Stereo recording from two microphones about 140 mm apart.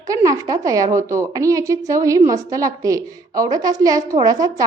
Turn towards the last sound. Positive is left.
turn(degrees=-25)  # may be behind; listen again after turning